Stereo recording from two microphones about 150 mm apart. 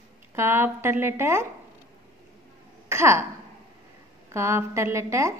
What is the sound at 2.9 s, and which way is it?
Speech, 20° right (ahead or behind).